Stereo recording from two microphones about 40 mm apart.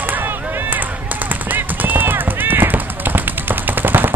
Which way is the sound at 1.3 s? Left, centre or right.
Right.